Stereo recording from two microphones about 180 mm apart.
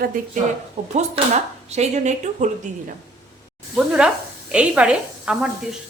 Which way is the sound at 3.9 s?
5° right (ahead or behind).